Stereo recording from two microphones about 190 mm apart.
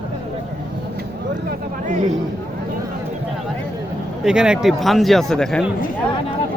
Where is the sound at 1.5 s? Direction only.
40° right (ahead or behind).